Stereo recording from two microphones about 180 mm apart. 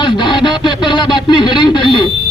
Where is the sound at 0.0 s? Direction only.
25° left (ahead or behind).